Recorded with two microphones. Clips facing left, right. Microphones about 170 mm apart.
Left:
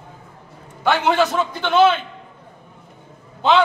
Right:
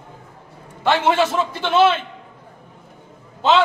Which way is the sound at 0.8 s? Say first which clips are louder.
Even; centre (ahead or behind).